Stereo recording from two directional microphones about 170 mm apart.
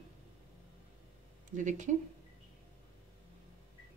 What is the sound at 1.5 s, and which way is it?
Speech, 45° right (ahead or behind).